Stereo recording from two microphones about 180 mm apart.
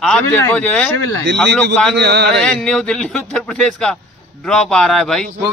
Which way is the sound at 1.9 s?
70° right (ahead or behind).